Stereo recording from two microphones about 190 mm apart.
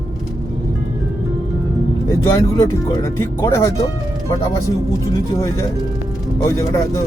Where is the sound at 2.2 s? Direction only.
15° left (ahead or behind).